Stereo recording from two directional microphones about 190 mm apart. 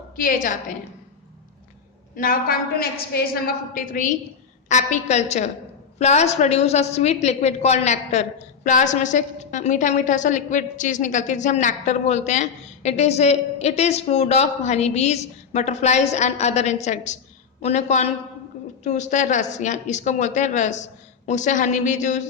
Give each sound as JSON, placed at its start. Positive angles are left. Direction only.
{"t": 0.2, "sound": "a woman's voice", "side_deg": 45}
{"t": 2.1, "sound": "a woman's voice", "side_deg": 50}